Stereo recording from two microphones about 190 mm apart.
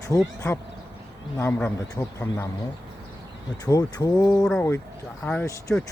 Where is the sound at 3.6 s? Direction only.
20° left (ahead or behind).